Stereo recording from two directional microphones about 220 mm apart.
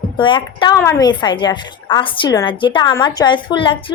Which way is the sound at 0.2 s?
20° left (ahead or behind).